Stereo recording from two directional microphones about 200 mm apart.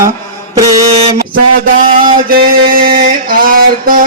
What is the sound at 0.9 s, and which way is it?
Mantra, 30° right (ahead or behind).